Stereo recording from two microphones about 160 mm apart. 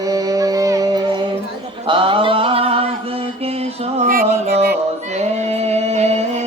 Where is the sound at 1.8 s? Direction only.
30° right (ahead or behind).